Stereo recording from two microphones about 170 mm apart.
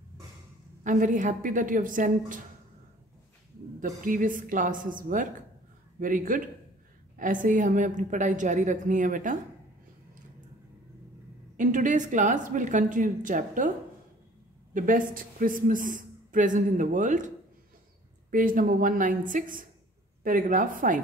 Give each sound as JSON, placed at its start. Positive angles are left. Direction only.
{"t": 0.8, "sound": "a man's voice", "side_deg": -50}
{"t": 3.8, "sound": "a man's voice", "side_deg": -50}
{"t": 11.5, "sound": "a man's voice", "side_deg": -50}
{"t": 18.3, "sound": "a man's voice", "side_deg": -55}